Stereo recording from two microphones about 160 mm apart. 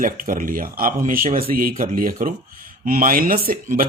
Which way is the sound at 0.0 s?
60° right (ahead or behind).